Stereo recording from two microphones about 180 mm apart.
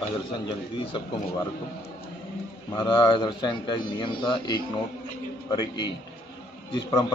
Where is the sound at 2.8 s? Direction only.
25° left (ahead or behind).